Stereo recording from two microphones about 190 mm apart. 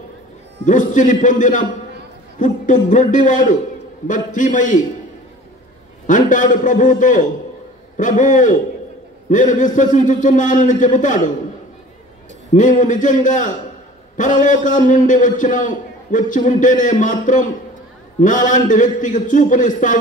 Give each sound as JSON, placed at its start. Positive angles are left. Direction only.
{"t": 0.7, "sound": "a man's voice", "side_deg": 40}
{"t": 6.0, "sound": "a man's voice", "side_deg": 45}
{"t": 12.5, "sound": "a man's voice", "side_deg": 40}